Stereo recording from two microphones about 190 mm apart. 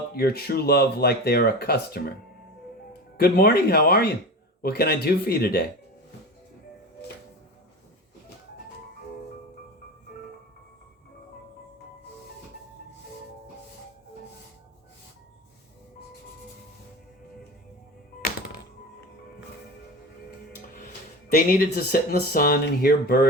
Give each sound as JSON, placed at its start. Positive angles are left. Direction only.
{"t": 0.1, "sound": "speech", "side_deg": 55}
{"t": 3.2, "sound": "speech", "side_deg": 55}
{"t": 21.3, "sound": "speech", "side_deg": 50}